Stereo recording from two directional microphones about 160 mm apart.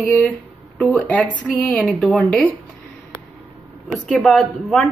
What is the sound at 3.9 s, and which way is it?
Speech, centre (ahead or behind).